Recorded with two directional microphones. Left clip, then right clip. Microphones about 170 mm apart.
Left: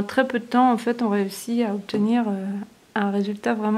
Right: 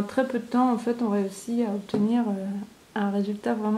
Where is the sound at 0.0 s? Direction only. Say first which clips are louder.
Left 4 dB; 25° left (ahead or behind).